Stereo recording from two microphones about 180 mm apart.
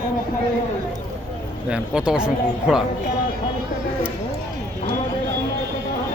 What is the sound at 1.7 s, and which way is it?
Speech, 5° right (ahead or behind).